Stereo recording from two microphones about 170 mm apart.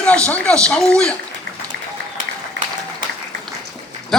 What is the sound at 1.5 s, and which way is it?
Applause, 90° right.